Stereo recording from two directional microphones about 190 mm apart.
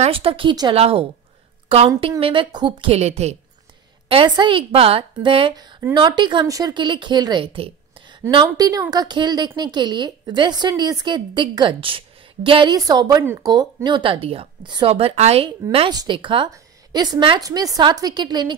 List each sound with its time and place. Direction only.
0.0 s a woman's voice: 30° right (ahead or behind)
15.9 s a woman's voice: 20° right (ahead or behind)